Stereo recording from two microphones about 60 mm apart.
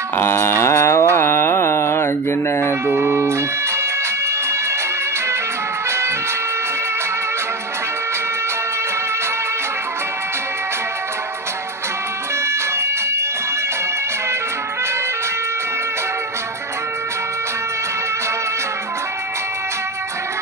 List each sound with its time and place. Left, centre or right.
0.2 s a sound: left
1.1 s mantra: left
2.9 s music: right
5.9 s music: right